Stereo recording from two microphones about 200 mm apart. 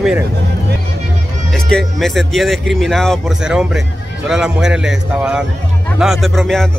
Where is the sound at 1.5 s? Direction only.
Centre (ahead or behind).